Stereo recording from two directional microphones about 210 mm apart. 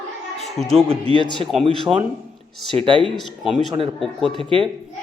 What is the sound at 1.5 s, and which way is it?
Speech, centre (ahead or behind).